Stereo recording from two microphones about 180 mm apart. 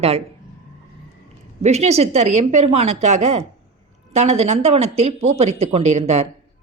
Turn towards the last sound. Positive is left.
turn(degrees=-35)  # may be behind; listen again after turning